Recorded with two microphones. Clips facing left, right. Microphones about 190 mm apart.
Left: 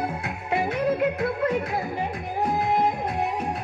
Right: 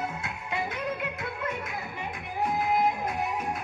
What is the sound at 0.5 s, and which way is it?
Yodeling, 35° left (ahead or behind).